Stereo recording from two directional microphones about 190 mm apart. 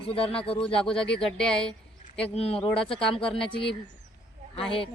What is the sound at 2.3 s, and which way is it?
Speech, 30° left (ahead or behind).